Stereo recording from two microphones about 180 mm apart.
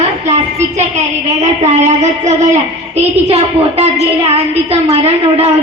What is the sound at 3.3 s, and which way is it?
A woman's voice, 35° right (ahead or behind).